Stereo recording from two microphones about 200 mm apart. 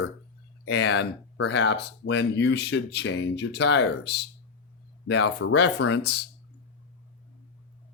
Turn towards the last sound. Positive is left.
turn(degrees=55)  # may be behind; listen again after turning